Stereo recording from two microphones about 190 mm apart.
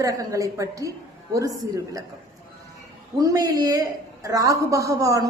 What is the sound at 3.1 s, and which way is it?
A woman's voice, 20° right (ahead or behind).